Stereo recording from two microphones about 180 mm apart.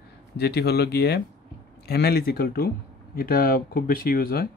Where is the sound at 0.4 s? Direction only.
65° left (ahead or behind).